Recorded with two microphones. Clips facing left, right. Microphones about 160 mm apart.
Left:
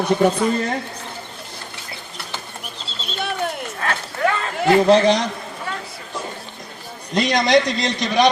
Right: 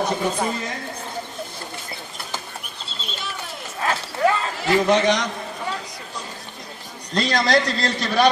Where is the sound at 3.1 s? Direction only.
60° left (ahead or behind).